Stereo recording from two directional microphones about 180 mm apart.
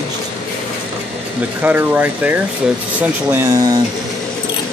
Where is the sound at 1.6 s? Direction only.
10° right (ahead or behind).